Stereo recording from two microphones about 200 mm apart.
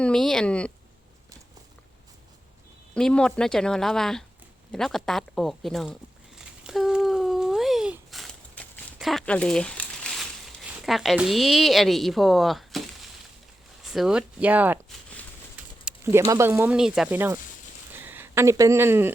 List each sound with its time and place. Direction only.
0.0 s speech: 5° left (ahead or behind)
2.9 s speech: 5° left (ahead or behind)
6.7 s a sound: centre (ahead or behind)
13.9 s speech: 5° right (ahead or behind)